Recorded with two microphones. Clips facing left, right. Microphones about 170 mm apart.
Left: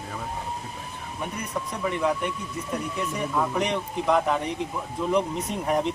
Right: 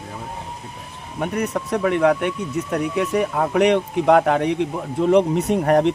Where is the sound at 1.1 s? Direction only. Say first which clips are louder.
Right 9 dB; 75° right (ahead or behind).